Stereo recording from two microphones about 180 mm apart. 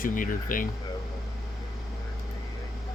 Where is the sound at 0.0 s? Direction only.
50° left (ahead or behind).